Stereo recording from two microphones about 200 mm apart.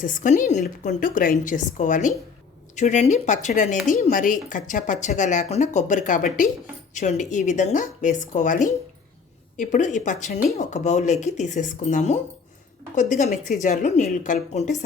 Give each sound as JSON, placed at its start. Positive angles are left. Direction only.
{"t": 0.0, "sound": "a woman's voice", "side_deg": 40}